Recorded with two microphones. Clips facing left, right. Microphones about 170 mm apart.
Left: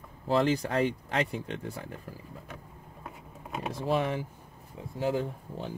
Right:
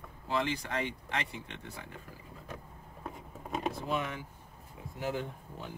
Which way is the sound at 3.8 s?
35° left (ahead or behind).